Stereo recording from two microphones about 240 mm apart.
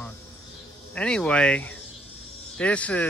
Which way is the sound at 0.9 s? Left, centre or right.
Centre.